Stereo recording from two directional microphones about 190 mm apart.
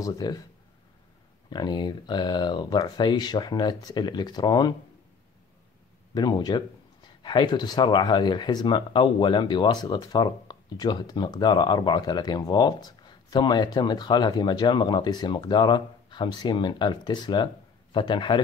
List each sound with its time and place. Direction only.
0.0 s speech: 20° left (ahead or behind)
1.5 s speech: 20° left (ahead or behind)
6.1 s speech: 20° left (ahead or behind)